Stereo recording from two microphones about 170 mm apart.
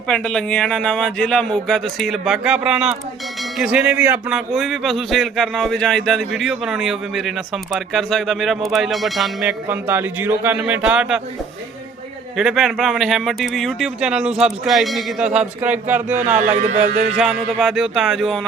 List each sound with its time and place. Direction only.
0.1 s speech: 5° left (ahead or behind)
12.4 s speech: centre (ahead or behind)
16.1 s speech: 45° right (ahead or behind)
17.2 s speech: centre (ahead or behind)